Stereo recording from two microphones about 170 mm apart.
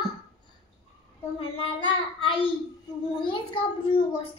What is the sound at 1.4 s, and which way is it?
Child singing, 30° left (ahead or behind).